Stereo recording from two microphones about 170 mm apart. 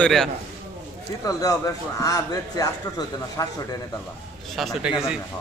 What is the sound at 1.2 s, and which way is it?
Speech, 20° left (ahead or behind).